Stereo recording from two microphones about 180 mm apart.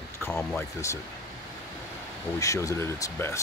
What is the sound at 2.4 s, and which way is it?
Speech, 15° left (ahead or behind).